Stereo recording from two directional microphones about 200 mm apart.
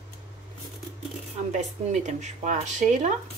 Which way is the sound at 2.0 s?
40° right (ahead or behind).